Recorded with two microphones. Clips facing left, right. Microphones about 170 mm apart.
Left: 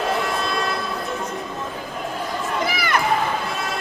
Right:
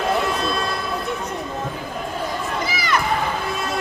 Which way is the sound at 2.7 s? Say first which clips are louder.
Even; 55° left (ahead or behind).